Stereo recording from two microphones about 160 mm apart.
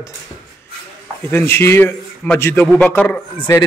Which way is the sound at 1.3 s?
15° left (ahead or behind).